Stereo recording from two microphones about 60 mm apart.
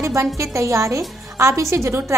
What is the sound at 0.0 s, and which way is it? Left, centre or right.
A woman's voice, right.